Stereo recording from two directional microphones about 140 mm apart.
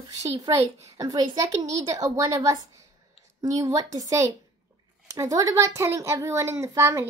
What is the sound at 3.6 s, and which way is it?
A woman's voice, 25° right (ahead or behind).